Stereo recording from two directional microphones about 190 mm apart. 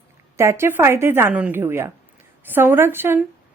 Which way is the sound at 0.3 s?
15° right (ahead or behind).